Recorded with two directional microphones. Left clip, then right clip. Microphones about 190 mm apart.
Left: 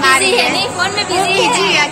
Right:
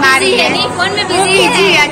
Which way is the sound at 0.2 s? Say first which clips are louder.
Right 2 dB; 50° left (ahead or behind).